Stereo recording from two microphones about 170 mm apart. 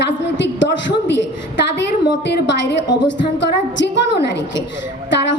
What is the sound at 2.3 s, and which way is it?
A woman's voice, 90° left.